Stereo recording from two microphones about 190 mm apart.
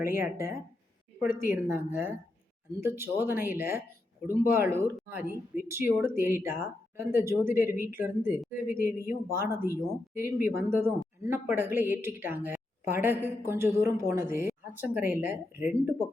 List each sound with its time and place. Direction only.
0.0 s speech: 15° right (ahead or behind)